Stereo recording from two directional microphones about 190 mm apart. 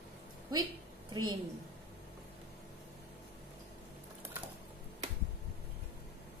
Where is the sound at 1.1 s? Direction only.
20° right (ahead or behind).